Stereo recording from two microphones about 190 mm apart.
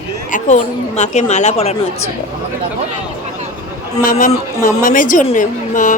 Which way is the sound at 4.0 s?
45° left (ahead or behind).